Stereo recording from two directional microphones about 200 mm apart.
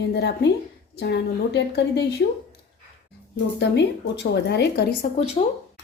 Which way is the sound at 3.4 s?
60° left (ahead or behind).